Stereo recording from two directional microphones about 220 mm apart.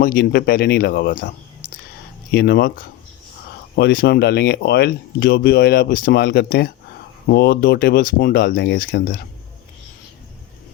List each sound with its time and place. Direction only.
0.0 s speech: 40° left (ahead or behind)
2.3 s speech: 45° left (ahead or behind)